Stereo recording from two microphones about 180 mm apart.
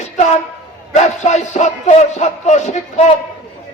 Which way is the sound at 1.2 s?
40° left (ahead or behind).